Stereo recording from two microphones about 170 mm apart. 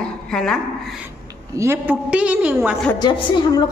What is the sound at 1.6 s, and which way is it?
A woman's voice, 15° right (ahead or behind).